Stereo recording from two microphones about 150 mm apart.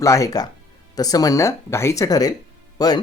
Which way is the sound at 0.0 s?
20° left (ahead or behind).